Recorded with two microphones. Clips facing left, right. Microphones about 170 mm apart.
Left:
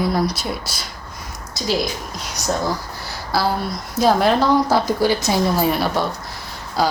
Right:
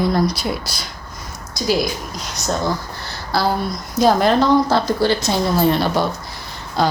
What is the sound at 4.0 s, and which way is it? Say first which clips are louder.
A woman's voice: right 1 dB; centre (ahead or behind).